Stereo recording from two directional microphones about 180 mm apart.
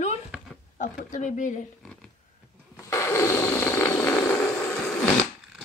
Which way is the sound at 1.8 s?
Centre (ahead or behind).